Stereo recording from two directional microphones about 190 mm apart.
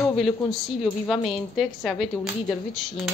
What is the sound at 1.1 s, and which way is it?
Speech, centre (ahead or behind).